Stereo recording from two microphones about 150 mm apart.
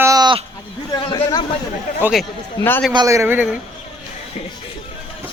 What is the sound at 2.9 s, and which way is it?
Speech, 25° right (ahead or behind).